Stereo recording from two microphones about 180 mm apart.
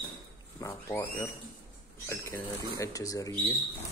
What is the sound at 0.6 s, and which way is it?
Speech, 15° left (ahead or behind).